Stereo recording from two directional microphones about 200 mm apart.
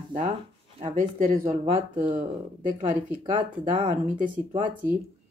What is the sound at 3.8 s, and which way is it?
Speech, 40° right (ahead or behind).